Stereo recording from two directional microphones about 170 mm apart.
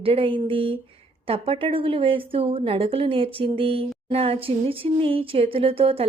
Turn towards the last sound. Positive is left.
turn(degrees=-35)  # may be behind; listen again after turning